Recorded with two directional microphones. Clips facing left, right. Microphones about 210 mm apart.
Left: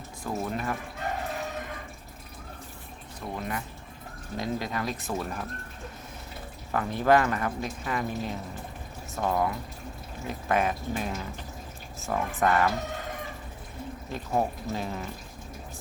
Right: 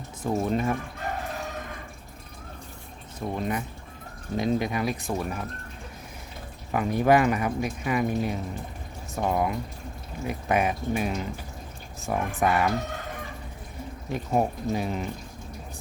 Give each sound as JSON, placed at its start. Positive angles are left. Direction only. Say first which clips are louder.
{"t": 0.3, "sound": "speech", "louder": "right 6 dB", "side_deg": -25}
{"t": 3.2, "sound": "speech", "louder": "right 5 dB", "side_deg": -20}
{"t": 6.7, "sound": "speech", "louder": "right 2 dB", "side_deg": -15}
{"t": 14.1, "sound": "speech", "louder": "right 3 dB", "side_deg": -15}